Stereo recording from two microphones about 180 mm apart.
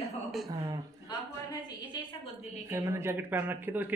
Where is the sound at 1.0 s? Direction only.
25° left (ahead or behind).